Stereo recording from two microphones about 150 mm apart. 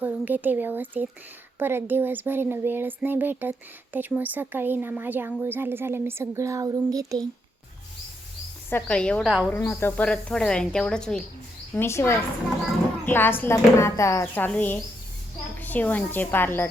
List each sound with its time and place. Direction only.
0.0 s speech: 10° right (ahead or behind)
8.7 s speech: 5° left (ahead or behind)
9.2 s speech: 5° right (ahead or behind)
9.6 s speech: 15° left (ahead or behind)
11.7 s speech: 15° left (ahead or behind)